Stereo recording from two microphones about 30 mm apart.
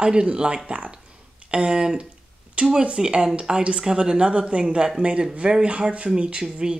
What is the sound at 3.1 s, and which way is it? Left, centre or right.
Speech, right.